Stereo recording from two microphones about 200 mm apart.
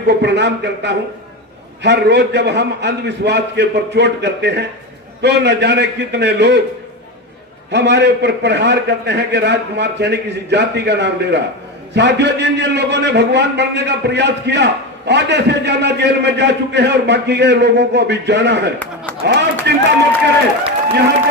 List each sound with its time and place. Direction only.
0.1 s a man's voice: 60° right (ahead or behind)
7.7 s a man's voice: 60° right (ahead or behind)